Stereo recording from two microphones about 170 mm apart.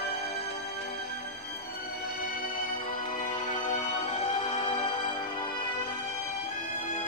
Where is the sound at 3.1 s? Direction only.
45° left (ahead or behind).